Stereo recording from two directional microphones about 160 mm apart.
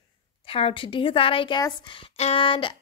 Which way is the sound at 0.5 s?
35° left (ahead or behind).